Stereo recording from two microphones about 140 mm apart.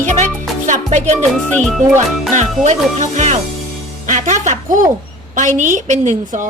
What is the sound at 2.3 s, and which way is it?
A woman's voice, 60° right (ahead or behind).